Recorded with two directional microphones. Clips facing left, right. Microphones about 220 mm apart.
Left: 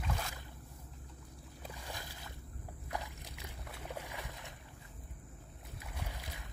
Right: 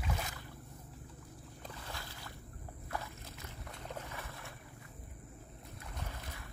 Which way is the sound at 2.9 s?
15° left (ahead or behind).